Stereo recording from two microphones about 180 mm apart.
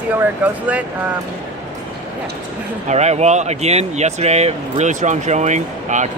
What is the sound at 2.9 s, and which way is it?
Speech, 40° right (ahead or behind).